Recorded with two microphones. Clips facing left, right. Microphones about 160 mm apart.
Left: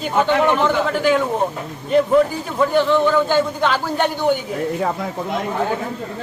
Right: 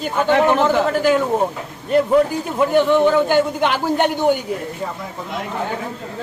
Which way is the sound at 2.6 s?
15° right (ahead or behind).